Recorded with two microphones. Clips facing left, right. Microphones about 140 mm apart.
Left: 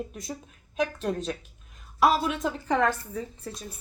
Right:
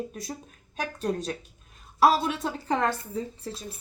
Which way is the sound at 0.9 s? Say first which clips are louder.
Even; 35° right (ahead or behind).